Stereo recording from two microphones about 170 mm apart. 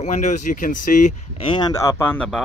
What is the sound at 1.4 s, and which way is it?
Speech, 25° left (ahead or behind).